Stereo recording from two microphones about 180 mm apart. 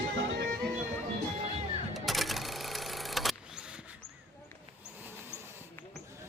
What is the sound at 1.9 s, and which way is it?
Vehicle, centre (ahead or behind).